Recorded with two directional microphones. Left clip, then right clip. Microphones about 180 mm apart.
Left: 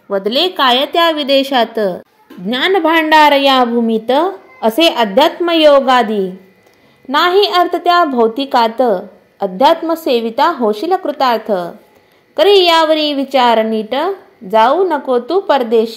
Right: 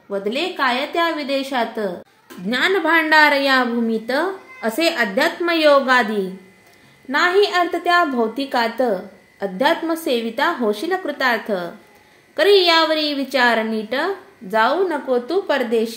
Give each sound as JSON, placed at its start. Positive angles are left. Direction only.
{"t": 0.4, "sound": "a woman's voice", "side_deg": 40}
{"t": 2.4, "sound": "a woman's voice", "side_deg": 25}